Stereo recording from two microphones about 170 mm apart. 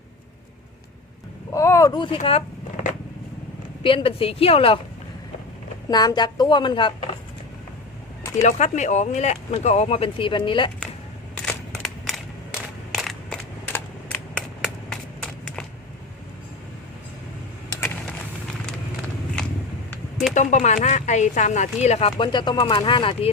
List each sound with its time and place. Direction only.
1.5 s speech: 20° left (ahead or behind)
3.8 s speech: 30° left (ahead or behind)
5.9 s speech: 25° left (ahead or behind)
8.4 s speech: 45° left (ahead or behind)
11.4 s a sound: 5° left (ahead or behind)
20.3 s speech: 45° left (ahead or behind); by 23.3 s 30° left (ahead or behind)